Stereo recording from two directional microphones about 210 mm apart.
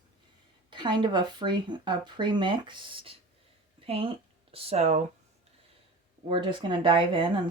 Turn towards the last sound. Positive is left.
turn(degrees=-25)  # may be behind; listen again after turning